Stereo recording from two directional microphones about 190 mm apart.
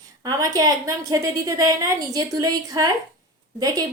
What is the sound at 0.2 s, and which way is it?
A woman's voice, 20° right (ahead or behind).